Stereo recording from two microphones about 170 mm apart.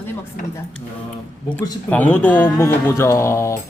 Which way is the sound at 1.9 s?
10° left (ahead or behind).